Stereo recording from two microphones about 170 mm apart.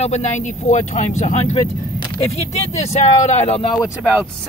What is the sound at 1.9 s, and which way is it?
Vehicle, 25° left (ahead or behind).